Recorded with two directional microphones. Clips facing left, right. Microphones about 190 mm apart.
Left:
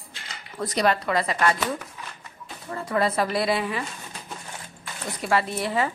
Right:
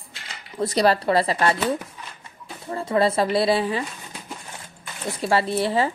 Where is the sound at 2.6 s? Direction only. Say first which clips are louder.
Right 4 dB; 25° right (ahead or behind).